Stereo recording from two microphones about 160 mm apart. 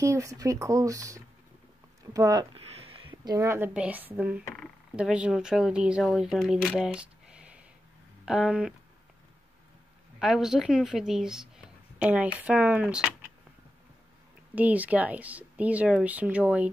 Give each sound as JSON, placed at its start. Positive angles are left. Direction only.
{"t": 0.0, "sound": "speech", "side_deg": -20}
{"t": 2.5, "sound": "a woman's voice", "side_deg": -35}
{"t": 6.8, "sound": "a sound", "side_deg": -5}
{"t": 8.3, "sound": "speech", "side_deg": -5}
{"t": 10.1, "sound": "speech", "side_deg": 0}
{"t": 14.5, "sound": "a woman's voice", "side_deg": -10}